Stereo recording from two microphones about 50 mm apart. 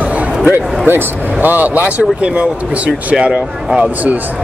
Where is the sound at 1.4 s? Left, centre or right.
Right.